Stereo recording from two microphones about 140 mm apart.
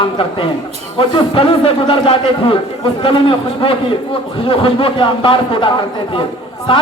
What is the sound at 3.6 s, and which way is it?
A man's voice, 40° left (ahead or behind).